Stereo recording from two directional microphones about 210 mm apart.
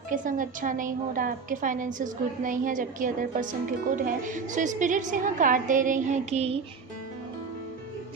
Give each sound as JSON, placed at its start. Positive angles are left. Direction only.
{"t": 0.1, "sound": "a woman's voice", "side_deg": -40}